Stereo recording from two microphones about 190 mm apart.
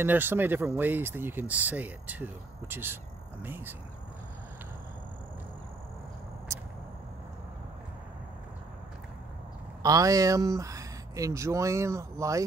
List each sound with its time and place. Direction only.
0.0 s speech: 10° right (ahead or behind)
6.5 s a sound: 15° right (ahead or behind)
9.8 s speech: 20° right (ahead or behind)